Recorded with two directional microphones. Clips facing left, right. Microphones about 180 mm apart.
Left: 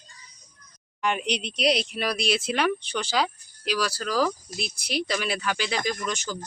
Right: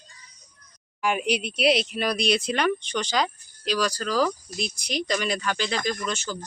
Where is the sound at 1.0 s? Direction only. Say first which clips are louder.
Right 2 dB; 5° right (ahead or behind); by 6.4 s 10° left (ahead or behind).